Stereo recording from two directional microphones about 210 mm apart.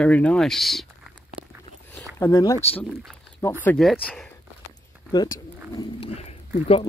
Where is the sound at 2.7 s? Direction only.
Centre (ahead or behind).